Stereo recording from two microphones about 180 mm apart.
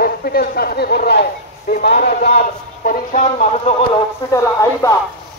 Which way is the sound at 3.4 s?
35° left (ahead or behind).